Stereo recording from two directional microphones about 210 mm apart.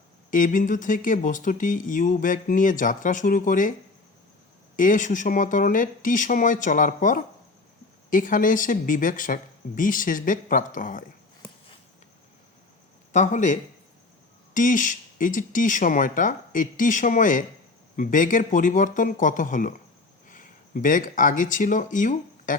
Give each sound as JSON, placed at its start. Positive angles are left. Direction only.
{"t": 0.3, "sound": "speech", "side_deg": 40}
{"t": 4.8, "sound": "speech", "side_deg": 40}
{"t": 13.1, "sound": "speech", "side_deg": 35}